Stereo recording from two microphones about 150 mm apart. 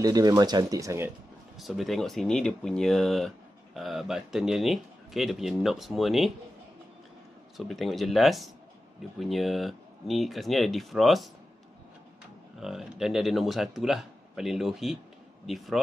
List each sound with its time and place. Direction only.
0.0 s speech: 25° right (ahead or behind)
1.6 s speech: centre (ahead or behind)
7.5 s speech: centre (ahead or behind)
12.5 s speech: centre (ahead or behind)